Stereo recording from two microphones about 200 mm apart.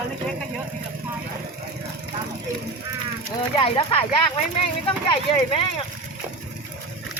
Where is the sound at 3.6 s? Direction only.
25° left (ahead or behind).